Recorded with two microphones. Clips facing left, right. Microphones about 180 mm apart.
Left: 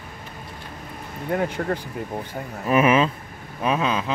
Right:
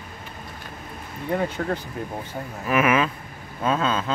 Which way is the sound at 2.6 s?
30° left (ahead or behind).